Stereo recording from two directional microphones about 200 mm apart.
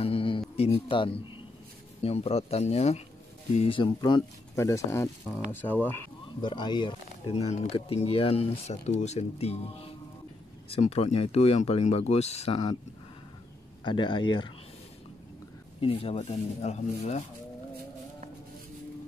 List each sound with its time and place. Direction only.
0.0 s a sound: 25° left (ahead or behind)
0.7 s speech: 25° left (ahead or behind); by 6.0 s 10° left (ahead or behind)
6.4 s speech: 20° left (ahead or behind)
13.8 s speech: 25° left (ahead or behind)
15.8 s speech: 30° left (ahead or behind)